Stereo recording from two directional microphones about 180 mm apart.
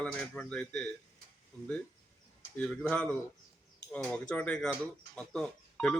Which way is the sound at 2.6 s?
5° left (ahead or behind).